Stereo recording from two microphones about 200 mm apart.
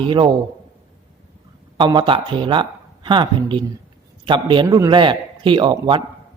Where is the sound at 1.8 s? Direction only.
25° right (ahead or behind).